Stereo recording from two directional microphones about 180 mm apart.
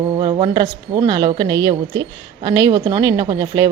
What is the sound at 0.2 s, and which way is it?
A woman's voice, 25° right (ahead or behind).